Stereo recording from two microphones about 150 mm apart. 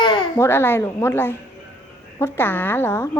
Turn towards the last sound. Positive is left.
turn(degrees=15)  # may be behind; listen again after turning